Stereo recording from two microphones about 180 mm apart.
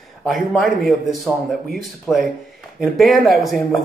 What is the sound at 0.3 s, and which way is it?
A man's voice, centre (ahead or behind).